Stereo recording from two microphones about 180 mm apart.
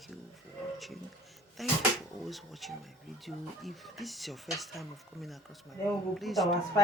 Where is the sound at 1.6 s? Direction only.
Centre (ahead or behind).